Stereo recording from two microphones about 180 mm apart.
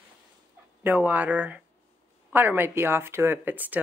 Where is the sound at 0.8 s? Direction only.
10° right (ahead or behind).